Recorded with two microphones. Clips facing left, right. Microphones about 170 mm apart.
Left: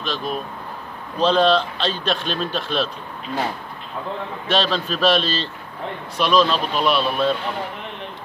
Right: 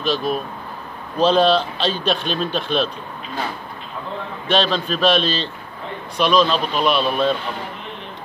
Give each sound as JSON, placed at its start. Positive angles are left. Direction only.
{"t": 0.0, "sound": "a man's voice", "side_deg": -5}
{"t": 4.5, "sound": "a man's voice", "side_deg": 5}